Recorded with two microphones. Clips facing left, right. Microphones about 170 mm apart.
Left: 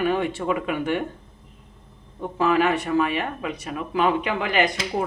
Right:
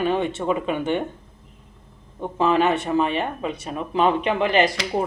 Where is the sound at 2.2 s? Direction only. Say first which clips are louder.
Right 1 dB; 25° right (ahead or behind).